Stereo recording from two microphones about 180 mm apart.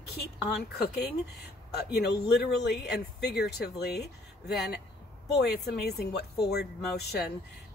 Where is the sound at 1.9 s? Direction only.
65° left (ahead or behind).